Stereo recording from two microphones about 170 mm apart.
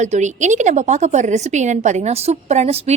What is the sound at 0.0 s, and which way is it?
A woman's voice, 45° right (ahead or behind).